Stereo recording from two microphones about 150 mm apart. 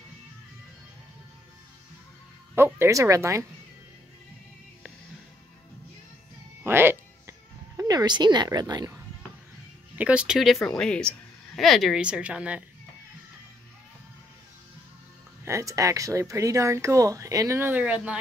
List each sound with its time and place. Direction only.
2.5 s speech: 15° right (ahead or behind)
6.6 s music: 15° right (ahead or behind)
9.9 s speech: 10° right (ahead or behind)
15.4 s speech: 20° right (ahead or behind)